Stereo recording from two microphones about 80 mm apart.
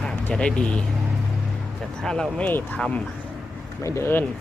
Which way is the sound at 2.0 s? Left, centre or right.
Centre.